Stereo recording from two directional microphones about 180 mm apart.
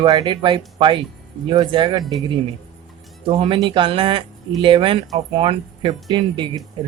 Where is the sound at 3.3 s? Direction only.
30° right (ahead or behind).